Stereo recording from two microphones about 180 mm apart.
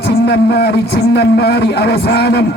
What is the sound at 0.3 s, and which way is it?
A man's voice, 60° left (ahead or behind).